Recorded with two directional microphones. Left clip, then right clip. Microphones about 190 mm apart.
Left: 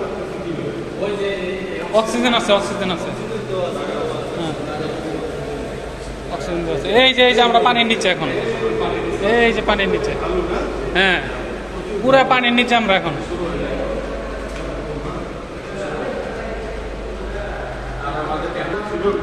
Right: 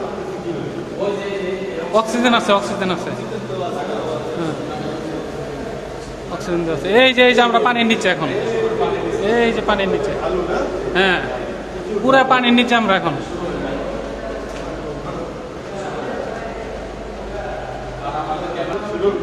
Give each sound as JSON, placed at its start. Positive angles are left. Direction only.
{"t": 2.0, "sound": "a man's voice", "side_deg": -25}
{"t": 6.8, "sound": "a man's voice", "side_deg": -30}
{"t": 10.9, "sound": "a man's voice", "side_deg": -10}